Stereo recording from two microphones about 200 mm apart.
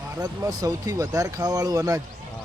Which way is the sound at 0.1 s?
15° right (ahead or behind).